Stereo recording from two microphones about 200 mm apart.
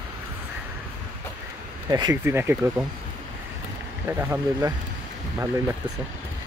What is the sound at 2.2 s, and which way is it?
Speech, 10° right (ahead or behind).